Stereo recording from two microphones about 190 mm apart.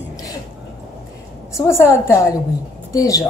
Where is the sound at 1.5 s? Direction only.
15° left (ahead or behind).